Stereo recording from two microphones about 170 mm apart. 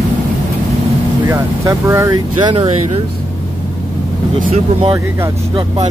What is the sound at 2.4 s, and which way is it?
Speech, 35° right (ahead or behind).